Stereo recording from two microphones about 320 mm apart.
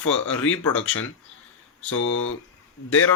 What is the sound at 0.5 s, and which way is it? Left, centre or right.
Speech, left.